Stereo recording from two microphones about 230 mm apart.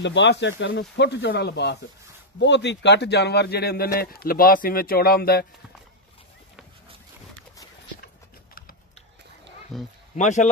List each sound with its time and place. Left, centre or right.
0.0 s speech: left
9.7 s speech: centre
10.1 s speech: left